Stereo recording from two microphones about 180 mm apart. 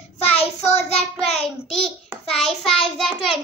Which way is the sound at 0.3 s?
35° left (ahead or behind).